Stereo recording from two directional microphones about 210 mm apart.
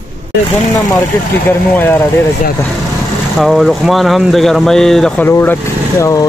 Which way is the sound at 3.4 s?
Centre (ahead or behind).